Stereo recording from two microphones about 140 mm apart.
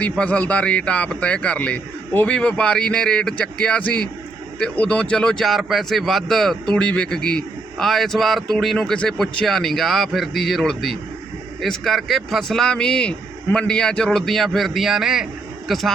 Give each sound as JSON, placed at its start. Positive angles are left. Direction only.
{"t": 0.0, "sound": "speech", "side_deg": 10}